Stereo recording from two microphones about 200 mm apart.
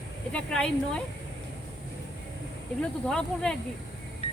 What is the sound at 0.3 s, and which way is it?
Speech, 5° left (ahead or behind).